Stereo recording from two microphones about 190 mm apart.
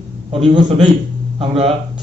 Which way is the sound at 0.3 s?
30° right (ahead or behind).